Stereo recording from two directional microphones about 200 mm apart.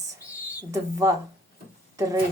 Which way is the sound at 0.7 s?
15° right (ahead or behind).